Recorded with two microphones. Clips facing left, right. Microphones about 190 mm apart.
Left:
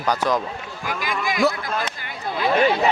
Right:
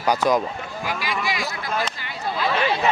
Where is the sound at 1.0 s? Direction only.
50° left (ahead or behind).